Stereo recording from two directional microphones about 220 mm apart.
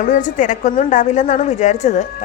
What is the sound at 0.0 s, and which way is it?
A woman's voice, 35° left (ahead or behind).